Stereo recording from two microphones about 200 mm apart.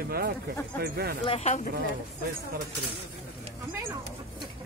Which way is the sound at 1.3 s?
35° left (ahead or behind).